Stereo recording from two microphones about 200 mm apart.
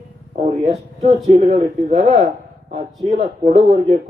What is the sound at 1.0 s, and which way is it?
Speech, 30° right (ahead or behind).